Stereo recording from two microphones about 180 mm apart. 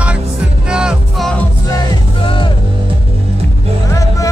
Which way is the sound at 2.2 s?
25° left (ahead or behind).